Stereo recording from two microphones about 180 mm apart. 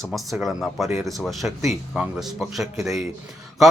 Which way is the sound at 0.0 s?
Centre (ahead or behind).